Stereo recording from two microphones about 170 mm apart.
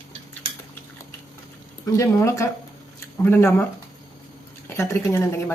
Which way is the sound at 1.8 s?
15° left (ahead or behind).